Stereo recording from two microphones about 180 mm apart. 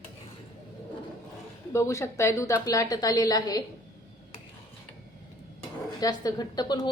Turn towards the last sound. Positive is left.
turn(degrees=20)  # may be behind; listen again after turning